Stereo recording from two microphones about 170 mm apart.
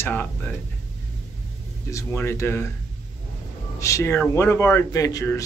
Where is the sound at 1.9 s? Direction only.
15° left (ahead or behind).